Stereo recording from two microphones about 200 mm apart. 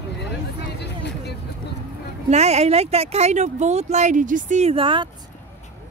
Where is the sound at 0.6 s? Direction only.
55° left (ahead or behind).